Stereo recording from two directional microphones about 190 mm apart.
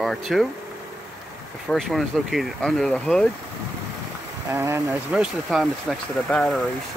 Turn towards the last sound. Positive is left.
turn(degrees=0)  # may be behind; listen again after turning